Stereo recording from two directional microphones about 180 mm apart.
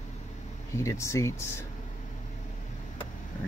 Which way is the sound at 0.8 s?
15° left (ahead or behind).